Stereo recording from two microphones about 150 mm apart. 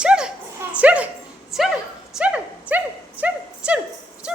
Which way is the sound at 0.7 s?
10° right (ahead or behind).